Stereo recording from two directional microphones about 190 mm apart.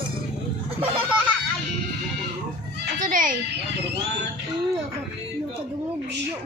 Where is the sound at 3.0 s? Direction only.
45° right (ahead or behind).